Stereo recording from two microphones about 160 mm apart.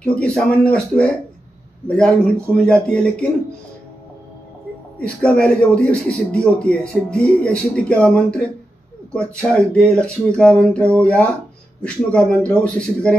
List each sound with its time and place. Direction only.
0.0 s a man's voice: 5° left (ahead or behind)
4.9 s a man's voice: 5° left (ahead or behind)